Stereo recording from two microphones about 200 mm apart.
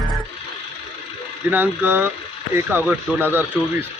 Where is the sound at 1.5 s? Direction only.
10° right (ahead or behind).